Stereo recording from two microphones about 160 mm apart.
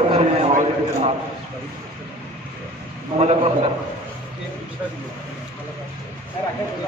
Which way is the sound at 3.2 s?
40° right (ahead or behind).